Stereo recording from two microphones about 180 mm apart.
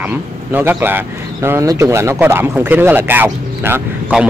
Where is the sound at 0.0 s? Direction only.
10° right (ahead or behind).